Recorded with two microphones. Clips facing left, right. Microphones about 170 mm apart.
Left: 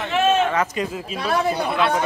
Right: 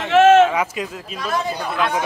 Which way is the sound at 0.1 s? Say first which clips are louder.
Right 8 dB; 90° right.